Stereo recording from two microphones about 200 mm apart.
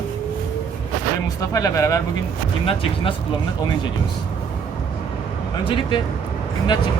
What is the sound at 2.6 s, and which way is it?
Speech, 25° left (ahead or behind).